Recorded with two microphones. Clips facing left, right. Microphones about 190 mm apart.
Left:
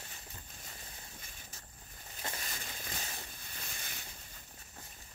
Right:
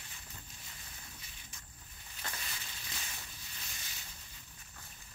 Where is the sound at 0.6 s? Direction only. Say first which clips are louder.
Left 3 dB; 45° left (ahead or behind).